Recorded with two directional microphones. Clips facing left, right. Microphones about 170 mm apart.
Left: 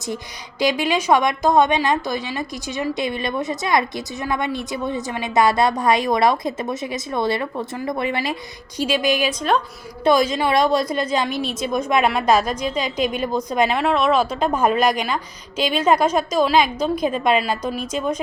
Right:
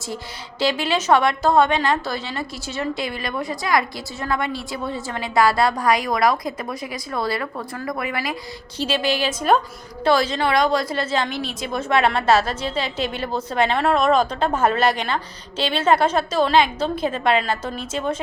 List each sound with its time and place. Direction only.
0.6 s a woman's voice: 15° left (ahead or behind)
8.8 s a woman's voice: 15° left (ahead or behind)
13.7 s a woman's voice: centre (ahead or behind)